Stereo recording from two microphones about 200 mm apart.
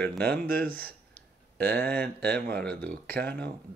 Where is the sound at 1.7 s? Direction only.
10° left (ahead or behind).